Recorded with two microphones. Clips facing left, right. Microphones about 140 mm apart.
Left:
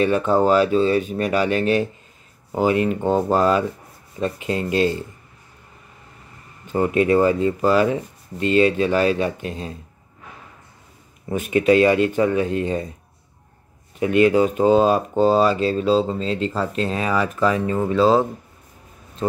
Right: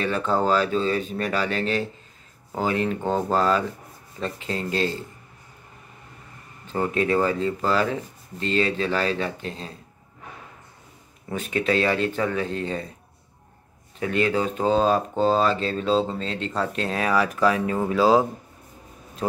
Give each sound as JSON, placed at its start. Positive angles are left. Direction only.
{"t": 0.0, "sound": "speech", "side_deg": 15}
{"t": 6.7, "sound": "speech", "side_deg": 15}
{"t": 11.2, "sound": "speech", "side_deg": 15}
{"t": 13.9, "sound": "speech", "side_deg": 15}